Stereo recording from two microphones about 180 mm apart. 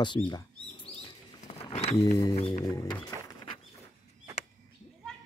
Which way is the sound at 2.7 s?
20° left (ahead or behind).